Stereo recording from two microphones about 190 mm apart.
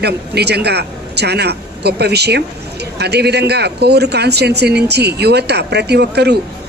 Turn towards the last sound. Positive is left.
turn(degrees=-60)  # may be behind; listen again after turning